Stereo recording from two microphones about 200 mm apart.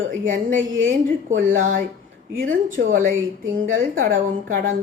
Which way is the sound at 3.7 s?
45° right (ahead or behind).